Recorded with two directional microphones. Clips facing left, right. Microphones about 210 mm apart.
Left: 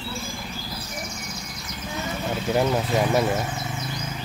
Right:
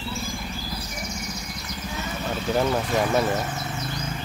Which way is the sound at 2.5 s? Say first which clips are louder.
Left 1 dB; 10° left (ahead or behind).